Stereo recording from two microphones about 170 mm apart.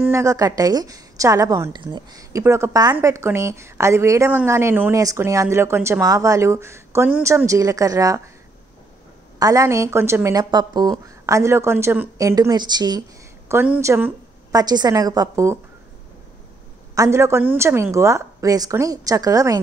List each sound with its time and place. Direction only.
0.0 s a woman's voice: 15° right (ahead or behind)
9.4 s a woman's voice: 20° right (ahead or behind)
13.5 s a woman's voice: 15° right (ahead or behind)
16.9 s a woman's voice: 15° right (ahead or behind)